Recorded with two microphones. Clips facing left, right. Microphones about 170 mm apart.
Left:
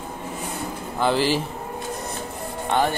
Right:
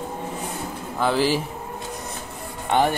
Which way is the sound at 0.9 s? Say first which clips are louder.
Even; centre (ahead or behind).